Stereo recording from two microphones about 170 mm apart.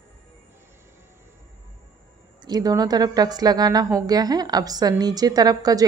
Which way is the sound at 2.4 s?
25° right (ahead or behind).